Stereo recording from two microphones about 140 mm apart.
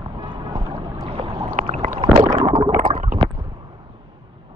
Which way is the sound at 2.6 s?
90° right.